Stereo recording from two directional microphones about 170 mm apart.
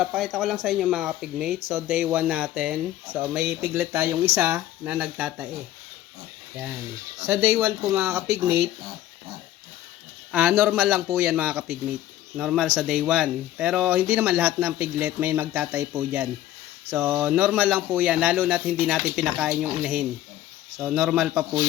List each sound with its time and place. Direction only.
0.0 s speech: centre (ahead or behind)
7.9 s speech: 15° right (ahead or behind)
10.3 s speech: 10° right (ahead or behind)